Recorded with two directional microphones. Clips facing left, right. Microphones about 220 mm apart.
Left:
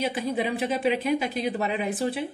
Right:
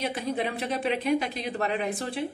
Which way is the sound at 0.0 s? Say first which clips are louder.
Left 2 dB; centre (ahead or behind).